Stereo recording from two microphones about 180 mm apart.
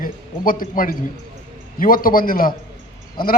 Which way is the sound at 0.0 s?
50° left (ahead or behind).